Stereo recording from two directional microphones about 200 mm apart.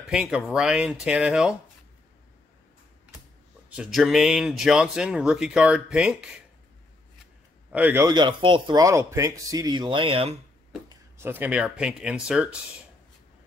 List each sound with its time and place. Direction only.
0.1 s speech: 5° right (ahead or behind)
3.7 s speech: 5° right (ahead or behind)
7.7 s speech: 10° right (ahead or behind); by 10.3 s 25° right (ahead or behind)
11.1 s speech: 10° right (ahead or behind)